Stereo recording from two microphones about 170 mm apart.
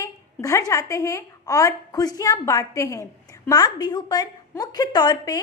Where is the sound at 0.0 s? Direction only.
20° left (ahead or behind).